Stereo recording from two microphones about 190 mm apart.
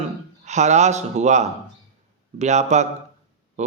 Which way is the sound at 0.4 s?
35° right (ahead or behind).